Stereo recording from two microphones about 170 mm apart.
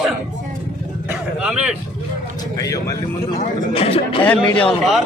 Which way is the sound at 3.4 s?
35° left (ahead or behind).